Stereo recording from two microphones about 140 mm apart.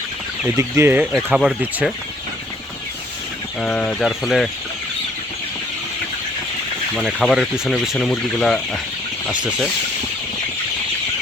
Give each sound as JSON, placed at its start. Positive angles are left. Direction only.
{"t": 0.4, "sound": "speech", "side_deg": -15}
{"t": 1.1, "sound": "speech", "side_deg": 0}
{"t": 3.6, "sound": "speech", "side_deg": 5}
{"t": 6.9, "sound": "speech", "side_deg": 0}
{"t": 9.3, "sound": "speech", "side_deg": -5}